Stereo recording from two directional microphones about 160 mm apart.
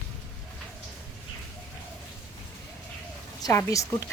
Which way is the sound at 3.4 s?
20° left (ahead or behind).